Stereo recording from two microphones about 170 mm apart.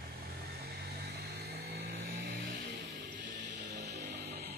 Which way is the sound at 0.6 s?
70° right (ahead or behind).